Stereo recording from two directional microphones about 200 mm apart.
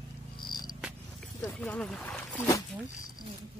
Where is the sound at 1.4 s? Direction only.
10° left (ahead or behind).